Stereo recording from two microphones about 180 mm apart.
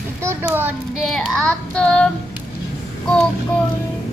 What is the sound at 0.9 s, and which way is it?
Child singing, centre (ahead or behind).